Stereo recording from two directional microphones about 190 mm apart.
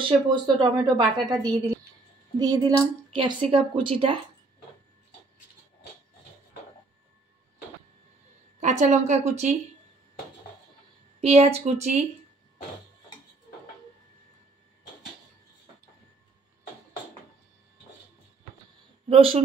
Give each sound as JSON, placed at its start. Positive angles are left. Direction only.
{"t": 0.3, "sound": "speech", "side_deg": -25}
{"t": 8.5, "sound": "a woman's voice", "side_deg": -40}
{"t": 11.1, "sound": "a woman's voice", "side_deg": -35}
{"t": 19.0, "sound": "a woman's voice", "side_deg": -30}